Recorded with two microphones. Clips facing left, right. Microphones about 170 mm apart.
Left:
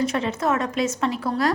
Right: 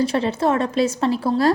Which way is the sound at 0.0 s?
30° right (ahead or behind).